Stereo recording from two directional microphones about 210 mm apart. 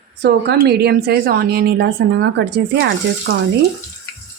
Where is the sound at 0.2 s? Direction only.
50° right (ahead or behind).